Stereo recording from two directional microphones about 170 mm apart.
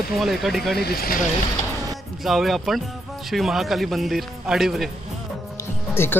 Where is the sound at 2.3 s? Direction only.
Centre (ahead or behind).